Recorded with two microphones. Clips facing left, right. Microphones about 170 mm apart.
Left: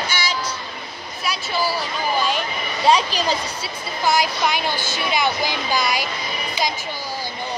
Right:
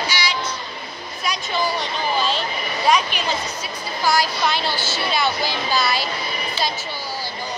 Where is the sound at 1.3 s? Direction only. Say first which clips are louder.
Even; 5° left (ahead or behind).